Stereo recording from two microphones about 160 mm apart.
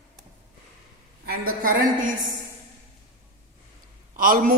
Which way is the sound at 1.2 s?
70° right (ahead or behind).